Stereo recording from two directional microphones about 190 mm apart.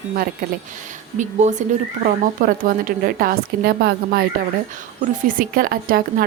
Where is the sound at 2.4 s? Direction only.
45° right (ahead or behind).